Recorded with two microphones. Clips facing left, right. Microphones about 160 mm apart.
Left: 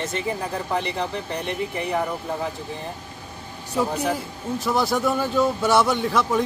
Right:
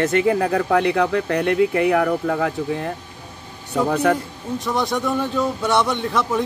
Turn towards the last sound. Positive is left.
turn(degrees=0)  # may be behind; listen again after turning